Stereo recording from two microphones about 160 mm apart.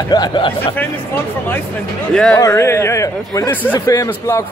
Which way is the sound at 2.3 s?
20° left (ahead or behind).